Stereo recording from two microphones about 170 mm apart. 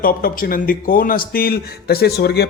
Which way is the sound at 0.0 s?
60° left (ahead or behind).